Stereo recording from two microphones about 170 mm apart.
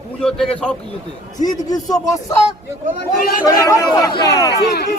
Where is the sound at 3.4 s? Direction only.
20° left (ahead or behind).